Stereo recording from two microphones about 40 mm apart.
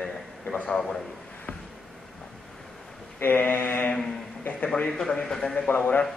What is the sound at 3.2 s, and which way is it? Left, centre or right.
Speech, left.